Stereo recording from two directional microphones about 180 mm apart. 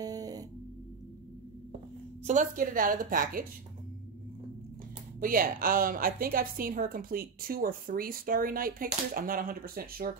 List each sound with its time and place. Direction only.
0.0 s music: 20° right (ahead or behind)
2.2 s a woman's voice: 45° right (ahead or behind)
5.2 s a woman's voice: 50° right (ahead or behind)